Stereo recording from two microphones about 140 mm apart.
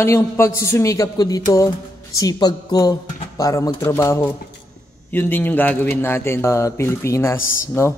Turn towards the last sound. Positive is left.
turn(degrees=15)  # may be behind; listen again after turning